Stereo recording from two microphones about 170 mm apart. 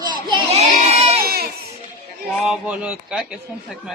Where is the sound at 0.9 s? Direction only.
40° right (ahead or behind).